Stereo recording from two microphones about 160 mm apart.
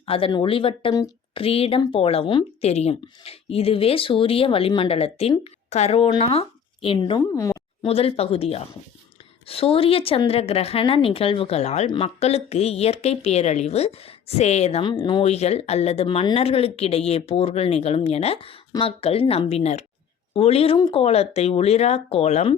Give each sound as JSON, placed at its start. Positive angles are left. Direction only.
{"t": 0.0, "sound": "speech", "side_deg": 35}
{"t": 7.3, "sound": "a sound", "side_deg": 20}
{"t": 7.9, "sound": "speech", "side_deg": 40}
{"t": 14.8, "sound": "speech", "side_deg": 30}